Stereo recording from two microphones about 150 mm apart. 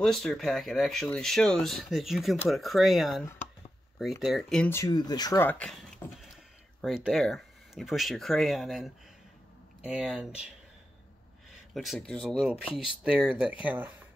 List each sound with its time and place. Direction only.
0.0 s speech: 5° left (ahead or behind)
4.6 s speech: 15° left (ahead or behind)
4.9 s speech: 25° left (ahead or behind)
5.4 s speech: 10° left (ahead or behind)
6.1 s speech: centre (ahead or behind)
11.7 s speech: centre (ahead or behind)